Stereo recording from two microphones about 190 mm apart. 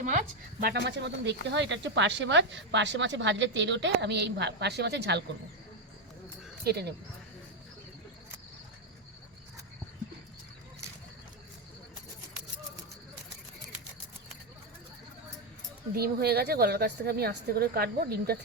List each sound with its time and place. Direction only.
0.6 s speech: 60° right (ahead or behind)
6.7 s speech: 60° right (ahead or behind)
16.0 s a woman's voice: 55° right (ahead or behind)